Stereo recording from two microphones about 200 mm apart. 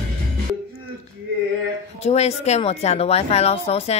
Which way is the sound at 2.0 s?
35° left (ahead or behind).